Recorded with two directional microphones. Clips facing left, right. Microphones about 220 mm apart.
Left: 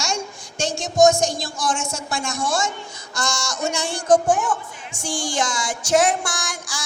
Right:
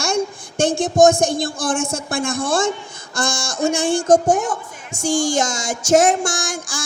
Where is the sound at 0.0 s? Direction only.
55° right (ahead or behind).